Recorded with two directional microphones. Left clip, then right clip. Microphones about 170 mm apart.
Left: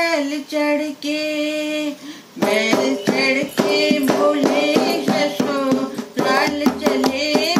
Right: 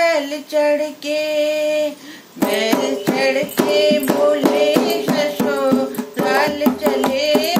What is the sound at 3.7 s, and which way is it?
Female singing, 15° right (ahead or behind).